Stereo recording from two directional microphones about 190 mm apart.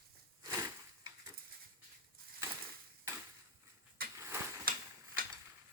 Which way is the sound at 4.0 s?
50° right (ahead or behind).